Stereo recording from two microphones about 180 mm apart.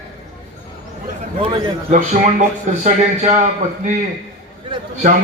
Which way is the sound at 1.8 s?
45° right (ahead or behind).